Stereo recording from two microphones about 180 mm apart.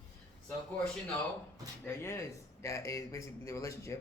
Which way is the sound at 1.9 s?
15° left (ahead or behind).